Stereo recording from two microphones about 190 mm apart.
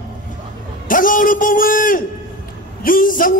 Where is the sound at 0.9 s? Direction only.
45° left (ahead or behind).